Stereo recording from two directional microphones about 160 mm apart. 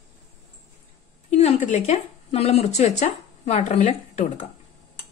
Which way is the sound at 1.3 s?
45° left (ahead or behind).